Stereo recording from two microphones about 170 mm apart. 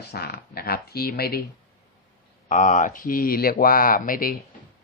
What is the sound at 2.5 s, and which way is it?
Speech, 50° left (ahead or behind).